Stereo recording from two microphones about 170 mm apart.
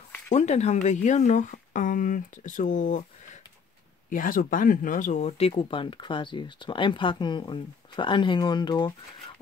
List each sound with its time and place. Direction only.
0.3 s a woman's voice: 40° left (ahead or behind)
4.1 s a woman's voice: 55° left (ahead or behind)
5.6 s speech: 30° left (ahead or behind)